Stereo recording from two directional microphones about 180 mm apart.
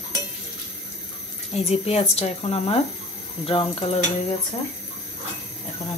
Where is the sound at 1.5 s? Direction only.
35° left (ahead or behind).